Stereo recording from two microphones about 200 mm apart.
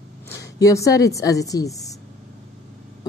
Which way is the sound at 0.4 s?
15° left (ahead or behind).